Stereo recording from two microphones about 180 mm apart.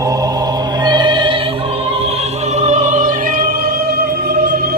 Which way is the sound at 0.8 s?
25° right (ahead or behind).